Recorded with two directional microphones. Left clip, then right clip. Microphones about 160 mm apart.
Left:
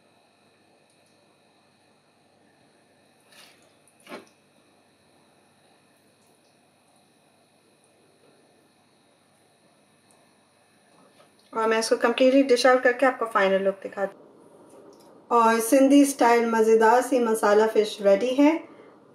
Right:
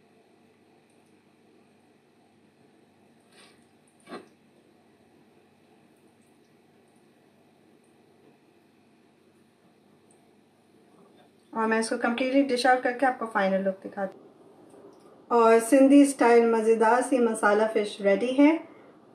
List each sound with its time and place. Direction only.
11.7 s speech: 40° left (ahead or behind)
15.2 s speech: 5° right (ahead or behind)